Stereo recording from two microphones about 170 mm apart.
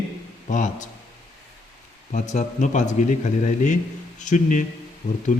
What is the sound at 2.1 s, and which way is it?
A man's voice, 45° left (ahead or behind).